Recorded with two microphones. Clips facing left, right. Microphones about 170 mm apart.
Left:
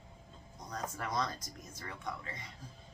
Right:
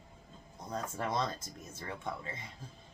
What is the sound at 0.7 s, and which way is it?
Speech, 25° right (ahead or behind).